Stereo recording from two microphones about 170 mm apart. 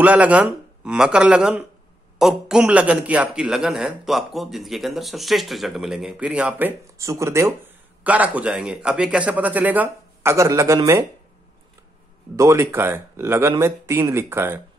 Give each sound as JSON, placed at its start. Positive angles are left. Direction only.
{"t": 0.0, "sound": "a man's voice", "side_deg": -10}
{"t": 12.4, "sound": "a man's voice", "side_deg": -15}